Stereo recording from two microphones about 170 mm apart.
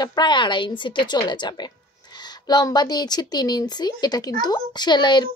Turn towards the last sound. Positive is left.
turn(degrees=25)  # may be behind; listen again after turning